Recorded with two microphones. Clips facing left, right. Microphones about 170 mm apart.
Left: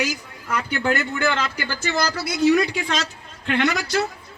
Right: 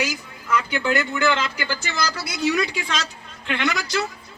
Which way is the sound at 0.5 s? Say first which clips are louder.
Right 1 dB; 45° left (ahead or behind).